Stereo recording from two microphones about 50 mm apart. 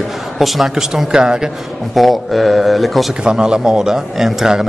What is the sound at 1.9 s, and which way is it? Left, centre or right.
A man's voice, centre.